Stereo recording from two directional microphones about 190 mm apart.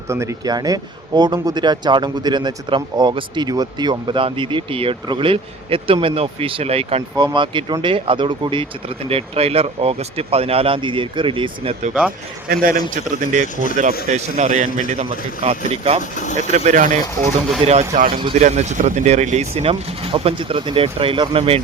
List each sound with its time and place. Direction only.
0.1 s speech: 15° right (ahead or behind); by 11.9 s 30° right (ahead or behind)
13.1 s speech: 45° right (ahead or behind)
16.1 s speech: 40° left (ahead or behind)
16.5 s speech: 40° right (ahead or behind)